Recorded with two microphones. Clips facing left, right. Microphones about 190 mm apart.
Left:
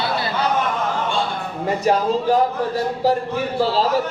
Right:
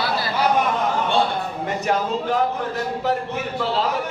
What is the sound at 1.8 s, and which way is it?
Speech, 35° left (ahead or behind).